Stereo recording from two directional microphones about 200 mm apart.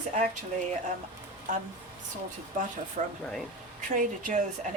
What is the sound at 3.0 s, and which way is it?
Speech, 40° right (ahead or behind).